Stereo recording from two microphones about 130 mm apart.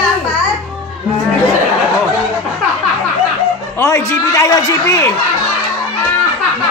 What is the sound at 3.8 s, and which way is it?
A man's voice, 25° left (ahead or behind).